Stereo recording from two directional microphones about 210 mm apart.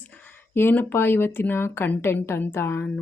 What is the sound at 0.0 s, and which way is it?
Speech, 10° left (ahead or behind).